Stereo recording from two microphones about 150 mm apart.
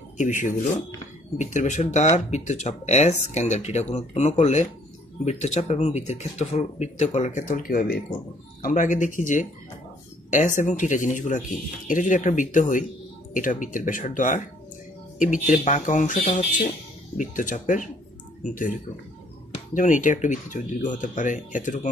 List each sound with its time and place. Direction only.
0.2 s speech: 55° left (ahead or behind)
7.4 s speech: 70° left (ahead or behind)
8.6 s speech: 60° left (ahead or behind)
15.4 s speech: 60° left (ahead or behind)
19.5 s speech: 55° left (ahead or behind)